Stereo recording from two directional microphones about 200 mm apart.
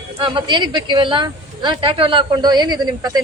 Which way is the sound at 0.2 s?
25° right (ahead or behind).